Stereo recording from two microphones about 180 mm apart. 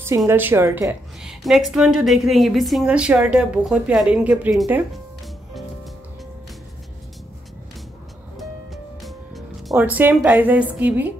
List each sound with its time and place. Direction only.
0.3 s a woman's voice: 10° right (ahead or behind)
1.2 s a woman's voice: centre (ahead or behind)
9.0 s speech: centre (ahead or behind)